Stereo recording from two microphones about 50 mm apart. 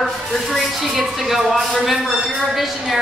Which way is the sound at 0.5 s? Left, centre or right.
Centre.